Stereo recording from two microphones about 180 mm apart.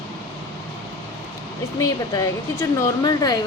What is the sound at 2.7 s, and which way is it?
Speech, 20° left (ahead or behind).